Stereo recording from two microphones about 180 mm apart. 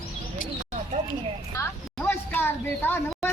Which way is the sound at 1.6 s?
15° left (ahead or behind).